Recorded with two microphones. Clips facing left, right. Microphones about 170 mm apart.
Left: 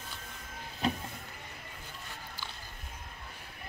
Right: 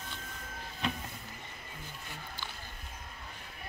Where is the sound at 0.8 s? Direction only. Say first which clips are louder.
Left 4 dB; 35° left (ahead or behind).